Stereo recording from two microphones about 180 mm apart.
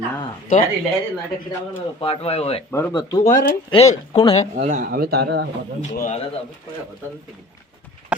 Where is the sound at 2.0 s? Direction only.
35° left (ahead or behind).